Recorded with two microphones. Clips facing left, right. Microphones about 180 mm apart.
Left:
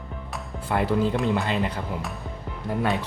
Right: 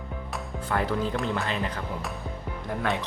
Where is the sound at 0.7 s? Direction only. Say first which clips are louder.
Left 3 dB; 15° left (ahead or behind).